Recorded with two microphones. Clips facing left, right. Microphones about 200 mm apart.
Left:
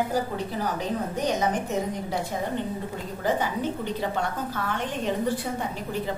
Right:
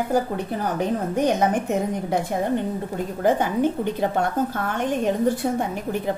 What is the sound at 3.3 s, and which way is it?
A woman's voice, 55° right (ahead or behind).